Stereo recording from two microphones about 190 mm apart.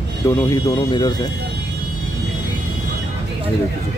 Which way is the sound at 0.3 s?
20° left (ahead or behind).